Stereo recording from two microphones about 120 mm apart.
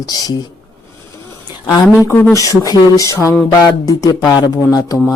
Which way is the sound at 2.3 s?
25° left (ahead or behind).